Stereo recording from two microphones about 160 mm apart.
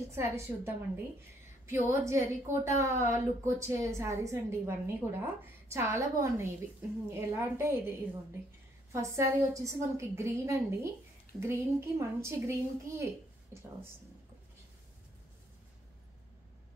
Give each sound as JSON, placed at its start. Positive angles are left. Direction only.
{"t": 0.1, "sound": "a woman's voice", "side_deg": -15}